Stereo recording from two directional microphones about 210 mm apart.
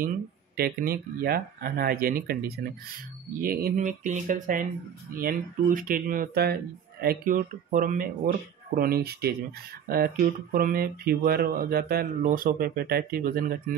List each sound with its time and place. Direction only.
0.6 s speech: 45° right (ahead or behind)